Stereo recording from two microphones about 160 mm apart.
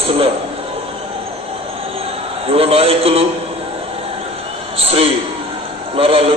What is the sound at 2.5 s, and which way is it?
Speech, 35° right (ahead or behind).